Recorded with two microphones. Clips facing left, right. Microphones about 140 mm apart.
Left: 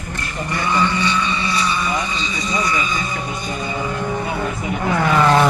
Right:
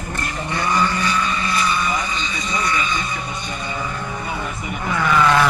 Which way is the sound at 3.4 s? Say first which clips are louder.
Left 3 dB; 40° left (ahead or behind).